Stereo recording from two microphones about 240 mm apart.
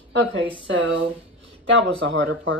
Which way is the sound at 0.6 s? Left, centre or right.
Right.